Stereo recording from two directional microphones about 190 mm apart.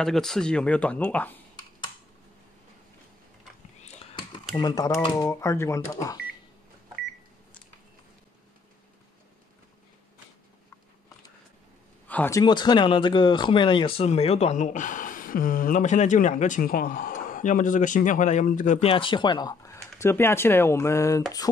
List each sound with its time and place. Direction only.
0.0 s speech: centre (ahead or behind)
3.8 s computer keyboard: 30° left (ahead or behind)
4.6 s speech: 20° left (ahead or behind)
12.1 s speech: 10° left (ahead or behind)